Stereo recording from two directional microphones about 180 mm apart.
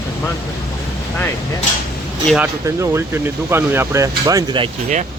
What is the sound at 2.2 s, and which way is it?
Speech, 5° right (ahead or behind).